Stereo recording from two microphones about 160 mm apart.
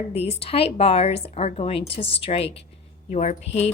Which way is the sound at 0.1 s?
40° left (ahead or behind).